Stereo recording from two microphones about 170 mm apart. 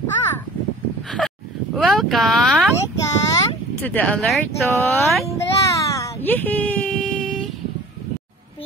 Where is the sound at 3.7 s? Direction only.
10° left (ahead or behind).